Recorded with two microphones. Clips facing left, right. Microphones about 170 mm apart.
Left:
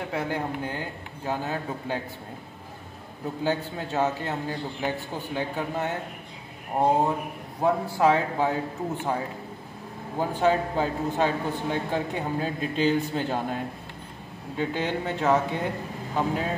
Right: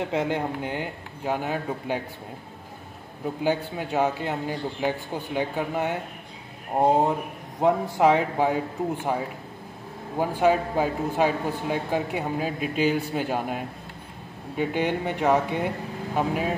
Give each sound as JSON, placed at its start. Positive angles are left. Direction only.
{"t": 0.0, "sound": "a man's voice", "side_deg": -20}
{"t": 3.4, "sound": "a man's voice", "side_deg": -15}
{"t": 10.1, "sound": "a man's voice", "side_deg": -10}
{"t": 14.6, "sound": "a man's voice", "side_deg": -15}